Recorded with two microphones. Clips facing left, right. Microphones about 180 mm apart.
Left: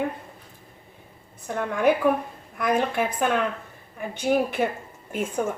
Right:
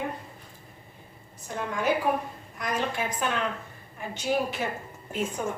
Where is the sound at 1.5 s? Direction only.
55° left (ahead or behind).